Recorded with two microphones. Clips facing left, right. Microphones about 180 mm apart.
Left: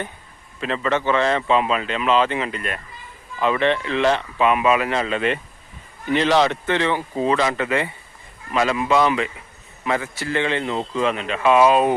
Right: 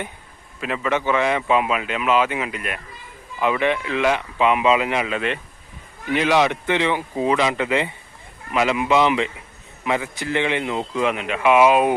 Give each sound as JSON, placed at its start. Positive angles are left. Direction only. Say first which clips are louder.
{"t": 0.6, "sound": "speech", "louder": "left 1 dB", "side_deg": -10}